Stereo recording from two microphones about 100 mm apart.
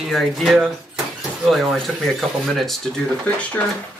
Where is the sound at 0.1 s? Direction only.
Centre (ahead or behind).